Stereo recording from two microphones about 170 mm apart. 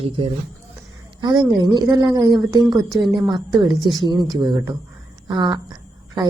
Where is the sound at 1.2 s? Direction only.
25° right (ahead or behind).